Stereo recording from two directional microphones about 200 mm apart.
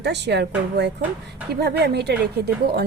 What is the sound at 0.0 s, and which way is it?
A woman's voice, 60° right (ahead or behind).